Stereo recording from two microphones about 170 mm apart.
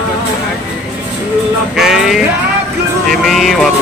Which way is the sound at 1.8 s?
Centre (ahead or behind).